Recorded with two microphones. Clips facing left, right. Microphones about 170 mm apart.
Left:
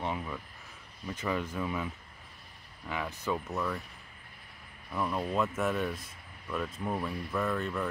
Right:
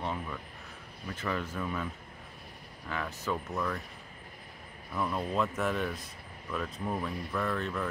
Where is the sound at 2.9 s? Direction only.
10° left (ahead or behind).